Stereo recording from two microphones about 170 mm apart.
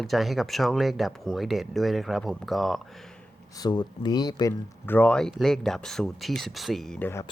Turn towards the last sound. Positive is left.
turn(degrees=10)  # may be behind; listen again after turning